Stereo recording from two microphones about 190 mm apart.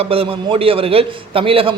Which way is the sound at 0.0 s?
30° right (ahead or behind).